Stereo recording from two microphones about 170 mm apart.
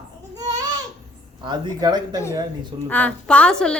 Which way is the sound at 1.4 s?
25° right (ahead or behind).